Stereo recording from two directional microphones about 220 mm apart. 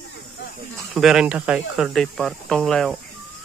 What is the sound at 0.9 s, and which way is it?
Speech, centre (ahead or behind).